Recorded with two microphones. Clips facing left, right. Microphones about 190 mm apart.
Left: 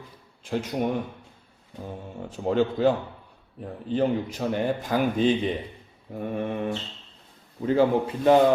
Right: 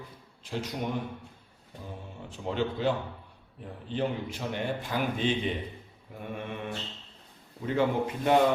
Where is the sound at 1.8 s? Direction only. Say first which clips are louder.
Left 7 dB; 45° left (ahead or behind).